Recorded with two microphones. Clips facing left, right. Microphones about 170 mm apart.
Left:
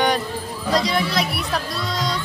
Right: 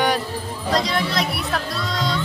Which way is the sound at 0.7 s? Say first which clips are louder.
Left 1 dB; centre (ahead or behind).